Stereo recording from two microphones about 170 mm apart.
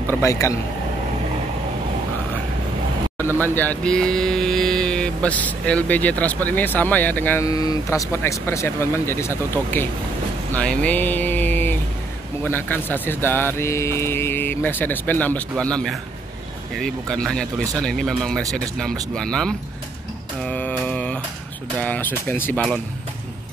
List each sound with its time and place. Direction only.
0.2 s speech: 15° left (ahead or behind)
3.3 s speech: 10° left (ahead or behind)
10.5 s vehicle: 10° left (ahead or behind)
12.4 s speech: 10° left (ahead or behind)
20.4 s mantra: 10° left (ahead or behind)
21.7 s speech: 10° left (ahead or behind)